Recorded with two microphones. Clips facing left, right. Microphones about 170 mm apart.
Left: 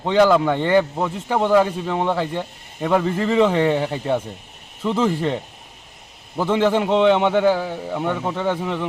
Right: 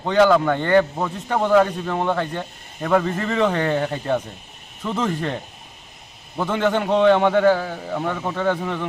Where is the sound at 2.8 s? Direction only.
20° left (ahead or behind).